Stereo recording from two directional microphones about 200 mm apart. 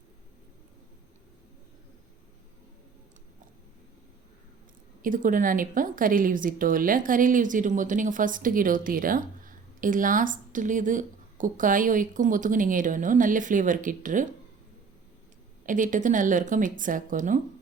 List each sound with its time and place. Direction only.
5.0 s a woman's voice: 40° right (ahead or behind)
15.6 s a woman's voice: 40° right (ahead or behind)